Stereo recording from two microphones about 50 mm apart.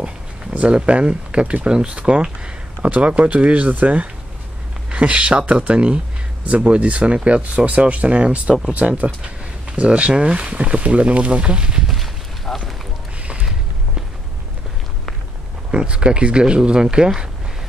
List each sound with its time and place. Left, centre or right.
0.0 s speech: right
12.4 s run: centre
15.7 s speech: centre